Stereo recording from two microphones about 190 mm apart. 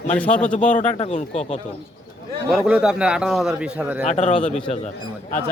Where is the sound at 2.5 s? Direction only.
5° right (ahead or behind).